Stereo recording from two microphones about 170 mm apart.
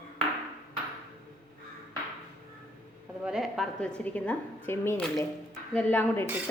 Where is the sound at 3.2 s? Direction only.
5° right (ahead or behind).